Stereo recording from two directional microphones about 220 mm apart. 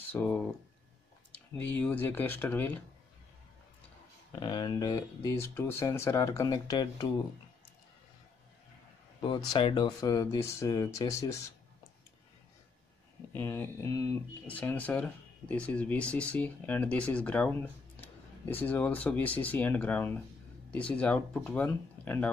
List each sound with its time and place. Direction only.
0.1 s speech: 5° left (ahead or behind)
4.4 s speech: 20° left (ahead or behind)
9.2 s speech: 20° left (ahead or behind)
13.3 s speech: 10° left (ahead or behind)